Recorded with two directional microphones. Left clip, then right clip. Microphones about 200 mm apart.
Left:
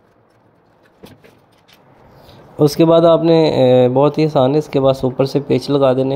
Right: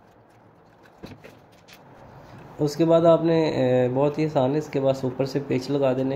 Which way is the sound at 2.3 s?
40° left (ahead or behind).